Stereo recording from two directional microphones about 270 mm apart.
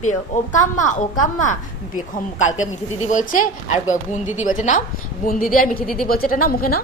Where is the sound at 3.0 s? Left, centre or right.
Left.